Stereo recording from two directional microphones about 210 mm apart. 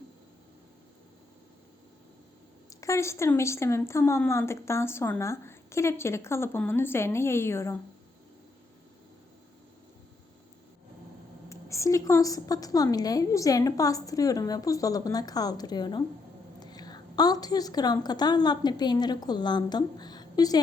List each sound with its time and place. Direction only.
2.8 s speech: 15° left (ahead or behind)
11.4 s a woman's voice: 15° left (ahead or behind)